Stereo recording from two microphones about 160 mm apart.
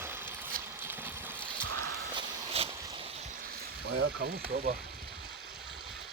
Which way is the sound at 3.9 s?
75° right (ahead or behind).